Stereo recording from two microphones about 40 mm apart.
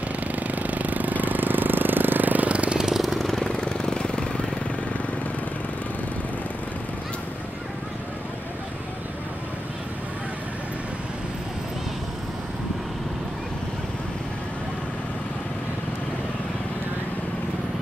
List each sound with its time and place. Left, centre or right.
0.4 s engine: right
2.5 s vehicle: right
2.8 s vehicle: centre
3.2 s vehicle: centre
3.4 s vehicle: centre